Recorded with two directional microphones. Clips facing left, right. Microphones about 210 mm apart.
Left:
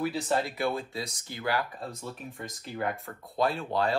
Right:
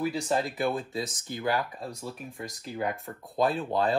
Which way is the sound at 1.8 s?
Centre (ahead or behind).